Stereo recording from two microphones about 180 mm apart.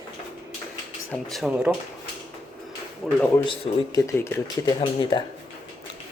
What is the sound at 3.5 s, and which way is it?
Speech, 20° left (ahead or behind).